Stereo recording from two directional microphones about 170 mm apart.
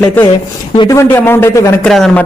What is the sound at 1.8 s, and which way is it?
Speech, 5° left (ahead or behind).